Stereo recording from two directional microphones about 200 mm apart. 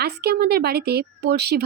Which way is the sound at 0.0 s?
50° right (ahead or behind).